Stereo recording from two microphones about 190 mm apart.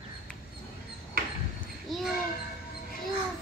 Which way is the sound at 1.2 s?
50° right (ahead or behind).